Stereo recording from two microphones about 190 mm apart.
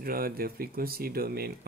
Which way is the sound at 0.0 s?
50° right (ahead or behind).